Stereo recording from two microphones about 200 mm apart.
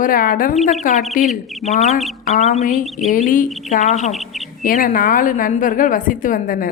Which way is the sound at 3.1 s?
40° left (ahead or behind).